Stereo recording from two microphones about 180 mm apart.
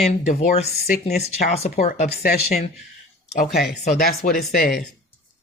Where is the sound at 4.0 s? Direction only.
55° left (ahead or behind).